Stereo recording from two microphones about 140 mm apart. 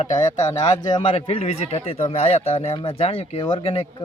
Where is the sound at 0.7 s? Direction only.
30° left (ahead or behind).